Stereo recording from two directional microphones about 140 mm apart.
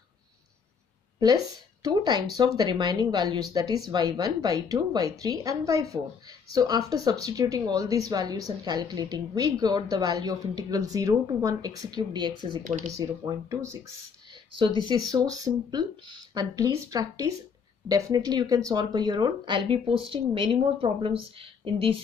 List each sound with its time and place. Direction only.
1.2 s speech: 30° right (ahead or behind)
12.6 s speech: 55° right (ahead or behind)
12.9 s speech: 25° right (ahead or behind); by 21.9 s 40° right (ahead or behind)